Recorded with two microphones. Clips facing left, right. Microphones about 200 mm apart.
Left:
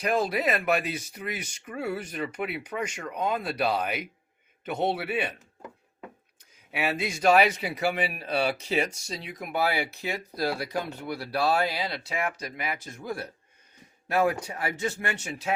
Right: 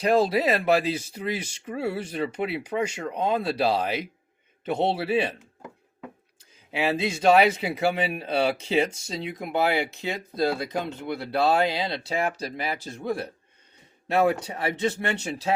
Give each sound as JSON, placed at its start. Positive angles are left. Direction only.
{"t": 0.0, "sound": "speech", "side_deg": -30}
{"t": 6.7, "sound": "speech", "side_deg": -25}